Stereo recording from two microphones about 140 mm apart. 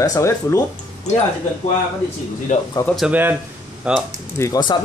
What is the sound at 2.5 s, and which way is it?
Speech, 65° left (ahead or behind).